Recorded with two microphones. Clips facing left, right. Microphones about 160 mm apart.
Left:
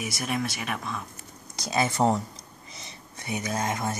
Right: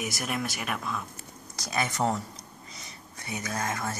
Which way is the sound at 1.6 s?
25° left (ahead or behind).